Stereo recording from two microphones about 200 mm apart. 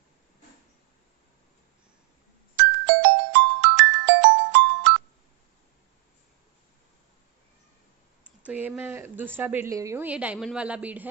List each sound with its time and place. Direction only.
2.5 s music: 60° right (ahead or behind)
8.5 s a woman's voice: 10° right (ahead or behind)